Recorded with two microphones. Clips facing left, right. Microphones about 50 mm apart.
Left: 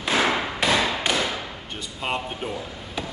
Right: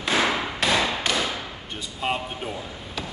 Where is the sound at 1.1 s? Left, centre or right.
Centre.